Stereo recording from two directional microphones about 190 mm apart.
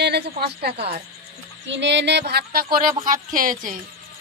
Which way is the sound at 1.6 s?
70° right (ahead or behind).